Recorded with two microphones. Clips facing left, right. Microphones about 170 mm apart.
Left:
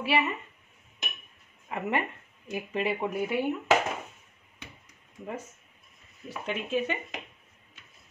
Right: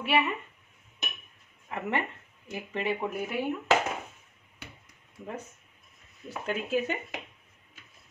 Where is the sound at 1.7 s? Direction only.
15° left (ahead or behind).